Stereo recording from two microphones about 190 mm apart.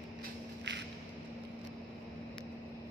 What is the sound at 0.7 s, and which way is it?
Vehicle, 70° right (ahead or behind).